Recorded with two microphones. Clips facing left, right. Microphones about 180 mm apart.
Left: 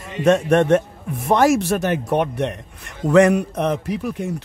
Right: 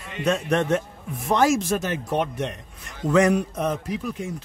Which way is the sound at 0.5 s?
55° left (ahead or behind).